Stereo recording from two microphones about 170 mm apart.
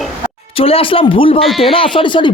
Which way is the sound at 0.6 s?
35° left (ahead or behind).